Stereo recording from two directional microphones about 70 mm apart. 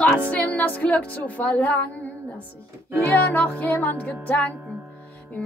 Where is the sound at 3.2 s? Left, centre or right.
Left.